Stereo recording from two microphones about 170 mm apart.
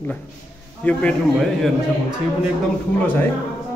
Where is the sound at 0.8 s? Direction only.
10° left (ahead or behind).